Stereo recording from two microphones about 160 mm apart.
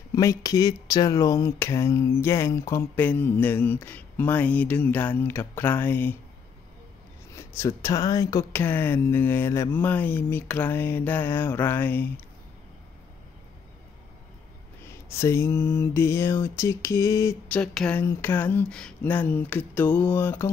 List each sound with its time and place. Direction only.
0.1 s speech: 20° left (ahead or behind)
7.3 s speech: 15° left (ahead or behind)
14.9 s speech: 15° left (ahead or behind)
17.5 s speech: 5° left (ahead or behind)